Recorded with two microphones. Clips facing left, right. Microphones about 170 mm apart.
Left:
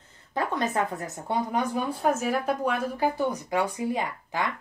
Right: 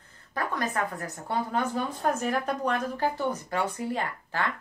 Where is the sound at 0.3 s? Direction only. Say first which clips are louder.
Left 3 dB; 25° left (ahead or behind).